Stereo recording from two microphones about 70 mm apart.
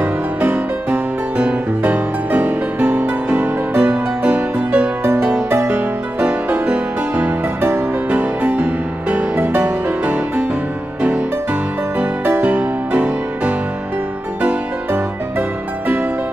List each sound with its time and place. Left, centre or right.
0.0 s music: right
5.5 s music: right
5.8 s music: right